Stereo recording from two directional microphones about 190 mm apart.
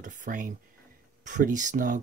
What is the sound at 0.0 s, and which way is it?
Speech, 40° right (ahead or behind).